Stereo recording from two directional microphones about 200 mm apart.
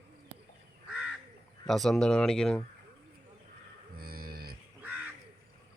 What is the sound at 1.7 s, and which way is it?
Speech, centre (ahead or behind).